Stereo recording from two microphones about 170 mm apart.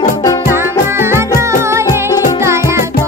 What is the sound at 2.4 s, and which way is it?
Music, 15° right (ahead or behind).